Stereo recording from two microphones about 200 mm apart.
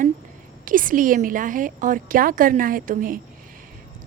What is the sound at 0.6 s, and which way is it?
Speech, 40° right (ahead or behind).